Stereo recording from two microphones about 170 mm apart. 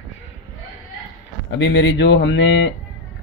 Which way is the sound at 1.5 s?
90° left.